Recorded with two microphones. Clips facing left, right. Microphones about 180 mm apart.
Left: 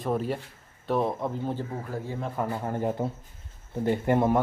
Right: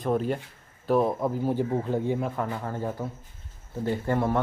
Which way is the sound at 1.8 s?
20° right (ahead or behind).